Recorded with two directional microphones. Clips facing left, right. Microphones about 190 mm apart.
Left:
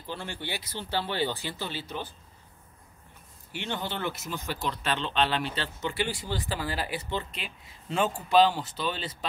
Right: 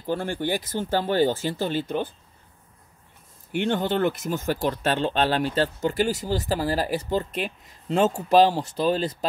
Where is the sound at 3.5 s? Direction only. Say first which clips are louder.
Right 10 dB; 50° right (ahead or behind).